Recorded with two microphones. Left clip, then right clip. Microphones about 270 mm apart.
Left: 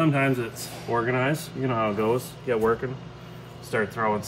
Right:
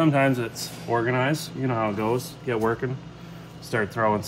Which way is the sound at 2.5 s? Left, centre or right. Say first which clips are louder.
Left 2 dB; right.